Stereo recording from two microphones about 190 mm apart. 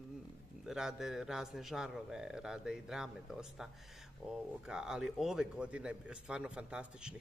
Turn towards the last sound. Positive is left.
turn(degrees=-5)  # may be behind; listen again after turning